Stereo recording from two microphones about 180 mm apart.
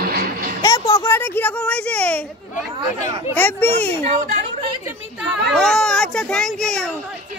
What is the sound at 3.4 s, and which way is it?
Speech, 10° left (ahead or behind).